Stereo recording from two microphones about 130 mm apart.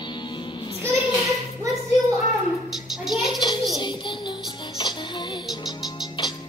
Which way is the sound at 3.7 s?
35° left (ahead or behind).